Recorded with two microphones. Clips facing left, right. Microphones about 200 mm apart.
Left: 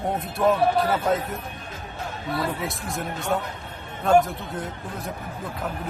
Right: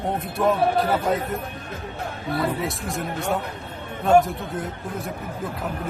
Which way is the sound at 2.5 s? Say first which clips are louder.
Right 3 dB; centre (ahead or behind).